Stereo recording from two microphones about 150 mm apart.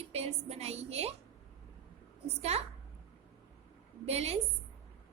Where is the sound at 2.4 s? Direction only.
45° right (ahead or behind).